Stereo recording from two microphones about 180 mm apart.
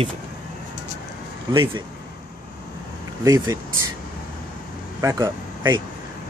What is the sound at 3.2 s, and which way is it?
Speech, 20° right (ahead or behind).